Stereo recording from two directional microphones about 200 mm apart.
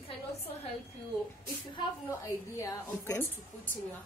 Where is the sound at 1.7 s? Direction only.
15° left (ahead or behind).